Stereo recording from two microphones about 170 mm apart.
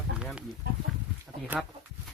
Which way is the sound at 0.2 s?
5° right (ahead or behind).